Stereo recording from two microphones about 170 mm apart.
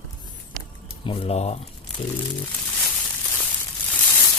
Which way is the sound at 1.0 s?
35° left (ahead or behind).